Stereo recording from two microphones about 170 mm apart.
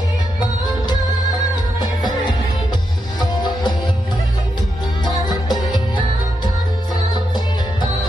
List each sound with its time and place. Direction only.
0.4 s music: 25° left (ahead or behind)
3.2 s music: 25° left (ahead or behind)
5.2 s music: 25° left (ahead or behind)